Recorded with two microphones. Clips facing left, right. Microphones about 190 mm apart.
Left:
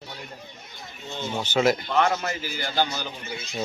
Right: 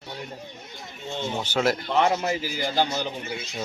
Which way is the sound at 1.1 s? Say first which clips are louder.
Right 2 dB; 25° right (ahead or behind).